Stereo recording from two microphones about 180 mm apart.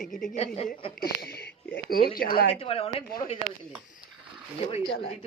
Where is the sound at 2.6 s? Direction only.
35° left (ahead or behind).